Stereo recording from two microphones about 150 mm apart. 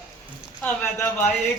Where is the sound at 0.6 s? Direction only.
10° left (ahead or behind).